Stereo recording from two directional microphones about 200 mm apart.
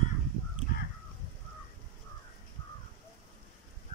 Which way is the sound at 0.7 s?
50° left (ahead or behind).